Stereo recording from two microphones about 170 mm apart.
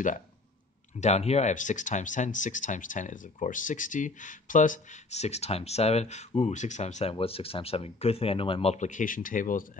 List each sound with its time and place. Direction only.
0.9 s speech: 40° left (ahead or behind)